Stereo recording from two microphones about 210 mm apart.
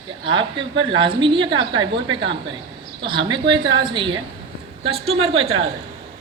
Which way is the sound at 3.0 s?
20° right (ahead or behind).